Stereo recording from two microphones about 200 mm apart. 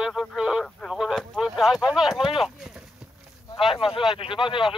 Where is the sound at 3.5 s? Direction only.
25° left (ahead or behind).